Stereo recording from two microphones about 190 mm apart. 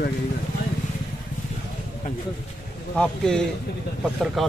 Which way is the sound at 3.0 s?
5° left (ahead or behind).